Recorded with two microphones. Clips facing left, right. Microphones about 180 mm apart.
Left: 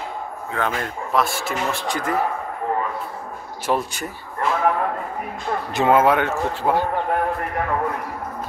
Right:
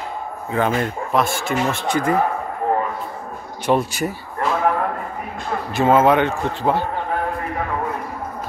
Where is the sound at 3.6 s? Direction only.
5° right (ahead or behind).